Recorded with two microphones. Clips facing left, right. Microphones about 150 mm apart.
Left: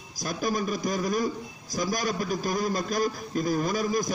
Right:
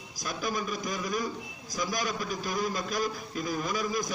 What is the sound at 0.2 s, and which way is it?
A man's voice, 40° left (ahead or behind).